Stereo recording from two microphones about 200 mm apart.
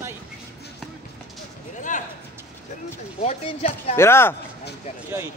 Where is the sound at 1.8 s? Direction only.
40° left (ahead or behind).